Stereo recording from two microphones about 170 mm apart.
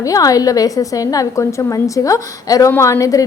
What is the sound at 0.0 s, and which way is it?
A woman's voice, 20° left (ahead or behind).